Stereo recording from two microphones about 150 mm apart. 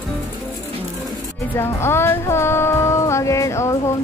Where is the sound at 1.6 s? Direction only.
15° left (ahead or behind).